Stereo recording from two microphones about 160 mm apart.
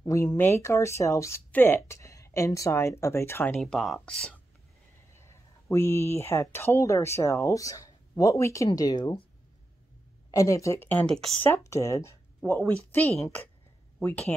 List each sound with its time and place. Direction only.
0.0 s speech: 20° left (ahead or behind)
3.6 s speech: centre (ahead or behind)
5.1 s speech: 15° left (ahead or behind)
10.3 s speech: 20° left (ahead or behind)